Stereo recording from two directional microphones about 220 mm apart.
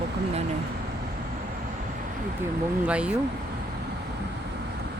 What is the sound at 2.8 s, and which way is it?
Speech, 5° right (ahead or behind).